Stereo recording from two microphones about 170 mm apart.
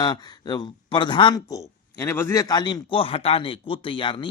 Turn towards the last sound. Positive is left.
turn(degrees=30)  # may be behind; listen again after turning